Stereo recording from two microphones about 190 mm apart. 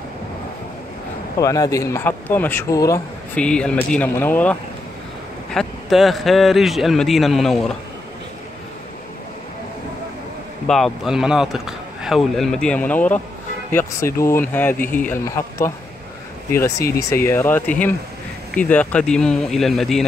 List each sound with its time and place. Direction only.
1.4 s speech: 15° left (ahead or behind)
3.3 s speech: 5° left (ahead or behind)
10.7 s speech: centre (ahead or behind)